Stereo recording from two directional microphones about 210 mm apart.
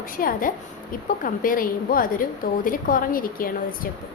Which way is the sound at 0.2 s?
40° left (ahead or behind).